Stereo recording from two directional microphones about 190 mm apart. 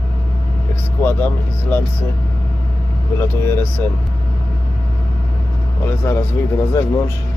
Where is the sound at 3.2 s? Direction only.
10° left (ahead or behind).